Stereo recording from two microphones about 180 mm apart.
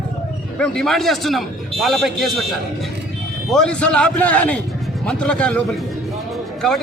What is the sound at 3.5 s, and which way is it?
A man's voice, 5° left (ahead or behind).